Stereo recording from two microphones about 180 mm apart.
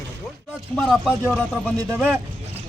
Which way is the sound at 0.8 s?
Centre (ahead or behind).